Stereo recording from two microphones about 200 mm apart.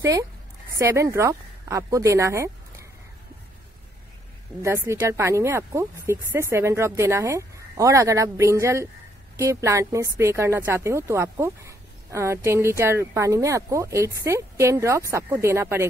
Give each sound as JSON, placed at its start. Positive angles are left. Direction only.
{"t": 0.0, "sound": "a woman's voice", "side_deg": -15}
{"t": 4.6, "sound": "a woman's voice", "side_deg": -15}